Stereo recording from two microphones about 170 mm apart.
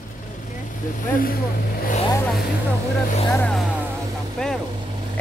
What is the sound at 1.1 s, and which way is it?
Speech, 60° left (ahead or behind).